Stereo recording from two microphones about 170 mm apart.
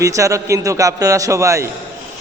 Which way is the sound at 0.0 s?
20° right (ahead or behind).